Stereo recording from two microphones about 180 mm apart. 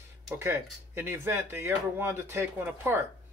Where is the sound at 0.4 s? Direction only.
15° right (ahead or behind).